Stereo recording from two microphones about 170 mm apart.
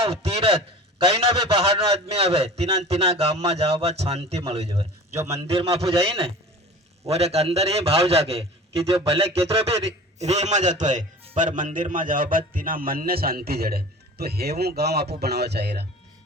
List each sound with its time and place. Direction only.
0.0 s a man's voice: 35° right (ahead or behind)
4.7 s speech: 20° right (ahead or behind)
5.2 s a man's voice: 35° right (ahead or behind); by 15.9 s 75° right (ahead or behind)